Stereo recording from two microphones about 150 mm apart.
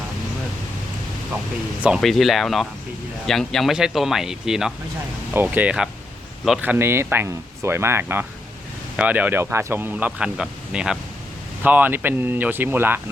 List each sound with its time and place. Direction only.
1.8 s speech: centre (ahead or behind)